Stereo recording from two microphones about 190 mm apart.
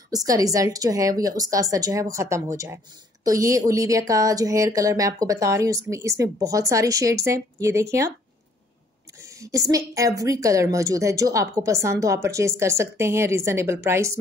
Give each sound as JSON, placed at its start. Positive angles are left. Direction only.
{"t": 0.1, "sound": "a woman's voice", "side_deg": -20}
{"t": 9.2, "sound": "a woman's voice", "side_deg": -15}